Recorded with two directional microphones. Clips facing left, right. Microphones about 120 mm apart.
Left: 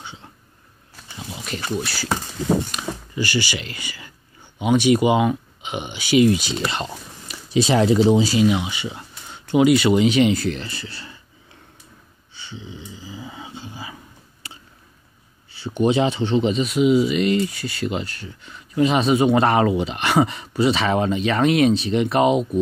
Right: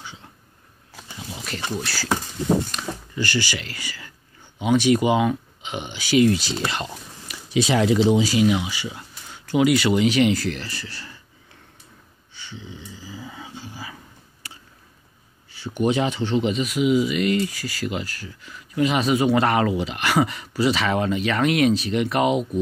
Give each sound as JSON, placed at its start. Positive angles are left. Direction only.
{"t": 1.5, "sound": "speech", "side_deg": 20}
{"t": 12.4, "sound": "dog", "side_deg": 15}
{"t": 14.4, "sound": "a sound", "side_deg": 25}
{"t": 15.5, "sound": "speech", "side_deg": 25}